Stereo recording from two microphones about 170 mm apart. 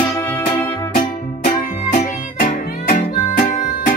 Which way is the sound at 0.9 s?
45° left (ahead or behind).